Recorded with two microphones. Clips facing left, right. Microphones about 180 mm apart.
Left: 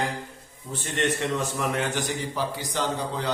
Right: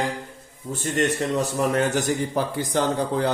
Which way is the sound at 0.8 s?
40° right (ahead or behind).